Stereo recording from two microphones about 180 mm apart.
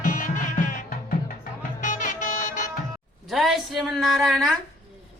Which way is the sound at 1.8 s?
45° left (ahead or behind).